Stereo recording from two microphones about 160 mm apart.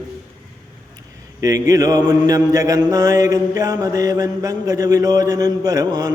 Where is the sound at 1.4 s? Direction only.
20° right (ahead or behind).